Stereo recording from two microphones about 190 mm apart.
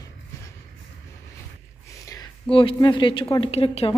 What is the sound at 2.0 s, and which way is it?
A woman's voice, 20° left (ahead or behind).